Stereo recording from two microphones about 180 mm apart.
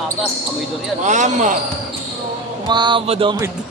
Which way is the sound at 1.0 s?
40° right (ahead or behind).